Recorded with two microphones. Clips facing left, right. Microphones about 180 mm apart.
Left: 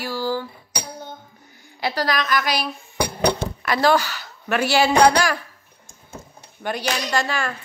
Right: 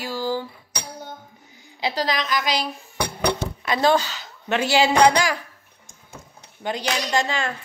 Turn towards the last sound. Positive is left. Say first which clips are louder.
# even
turn(degrees=-20)  # may be behind; listen again after turning